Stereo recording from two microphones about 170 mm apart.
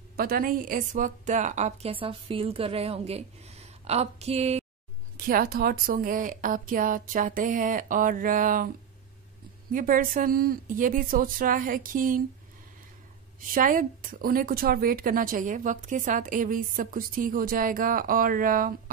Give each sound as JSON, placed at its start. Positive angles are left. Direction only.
{"t": 0.1, "sound": "a woman's voice", "side_deg": -60}
{"t": 5.1, "sound": "speech", "side_deg": -55}
{"t": 9.7, "sound": "speech", "side_deg": -55}
{"t": 13.6, "sound": "a woman's voice", "side_deg": -55}